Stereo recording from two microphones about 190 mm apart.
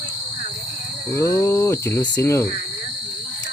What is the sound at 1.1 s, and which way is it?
Speech, 15° left (ahead or behind).